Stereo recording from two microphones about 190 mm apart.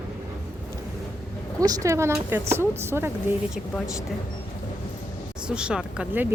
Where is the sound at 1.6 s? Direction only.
20° right (ahead or behind).